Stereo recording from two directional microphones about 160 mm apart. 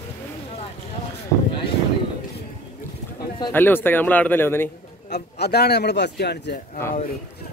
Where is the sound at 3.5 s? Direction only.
10° left (ahead or behind).